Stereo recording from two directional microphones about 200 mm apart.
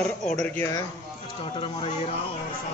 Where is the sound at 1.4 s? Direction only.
25° left (ahead or behind).